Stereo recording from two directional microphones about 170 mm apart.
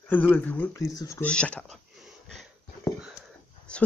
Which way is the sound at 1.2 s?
5° left (ahead or behind).